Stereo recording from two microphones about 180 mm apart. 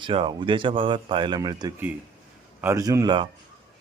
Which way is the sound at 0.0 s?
30° right (ahead or behind).